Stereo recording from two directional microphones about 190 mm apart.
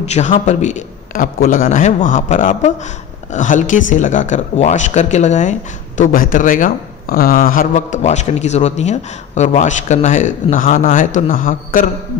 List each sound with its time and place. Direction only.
0.0 s speech: 35° left (ahead or behind)